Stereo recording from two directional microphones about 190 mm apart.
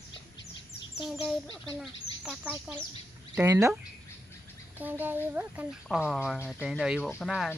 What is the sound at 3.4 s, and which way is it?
Speech, 15° right (ahead or behind).